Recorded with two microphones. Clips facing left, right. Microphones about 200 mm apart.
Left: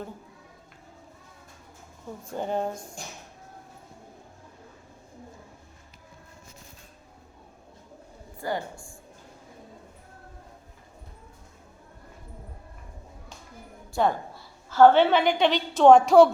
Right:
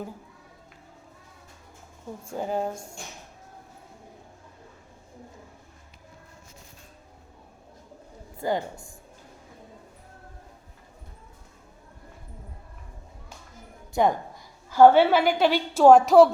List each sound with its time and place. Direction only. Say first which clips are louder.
2.3 s speech: even; 5° right (ahead or behind)
8.4 s a woman's voice: right 4 dB; 20° right (ahead or behind)
13.9 s a woman's voice: right 2 dB; 15° right (ahead or behind)